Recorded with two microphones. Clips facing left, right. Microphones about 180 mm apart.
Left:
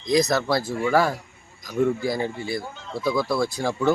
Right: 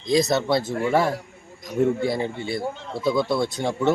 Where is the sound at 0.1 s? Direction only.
25° right (ahead or behind).